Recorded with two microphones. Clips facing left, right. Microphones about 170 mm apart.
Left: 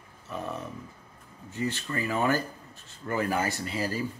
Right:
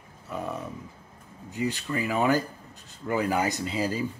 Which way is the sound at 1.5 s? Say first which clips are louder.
Right 2 dB; 15° right (ahead or behind).